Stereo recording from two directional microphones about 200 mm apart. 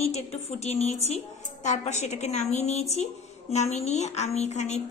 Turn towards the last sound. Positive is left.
turn(degrees=35)  # may be behind; listen again after turning